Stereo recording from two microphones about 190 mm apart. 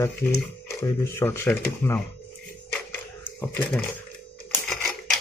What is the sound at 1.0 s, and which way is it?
Speech, 15° left (ahead or behind).